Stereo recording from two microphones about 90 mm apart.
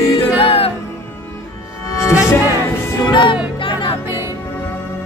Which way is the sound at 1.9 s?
35° left (ahead or behind).